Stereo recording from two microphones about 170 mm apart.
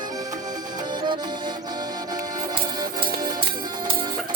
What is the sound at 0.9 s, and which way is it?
Music, 25° right (ahead or behind).